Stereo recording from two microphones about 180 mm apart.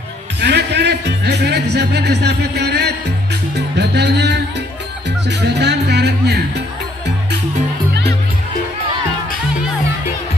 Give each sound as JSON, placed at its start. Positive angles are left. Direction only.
{"t": 0.4, "sound": "speech", "side_deg": -70}
{"t": 3.5, "sound": "music", "side_deg": -70}